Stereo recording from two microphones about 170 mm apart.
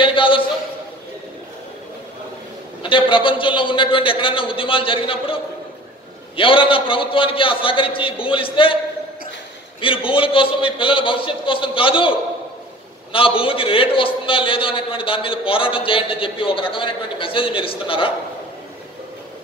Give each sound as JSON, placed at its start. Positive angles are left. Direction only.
{"t": 0.0, "sound": "a sound", "side_deg": 30}
{"t": 2.8, "sound": "a man's voice", "side_deg": 30}
{"t": 9.8, "sound": "a man's voice", "side_deg": 30}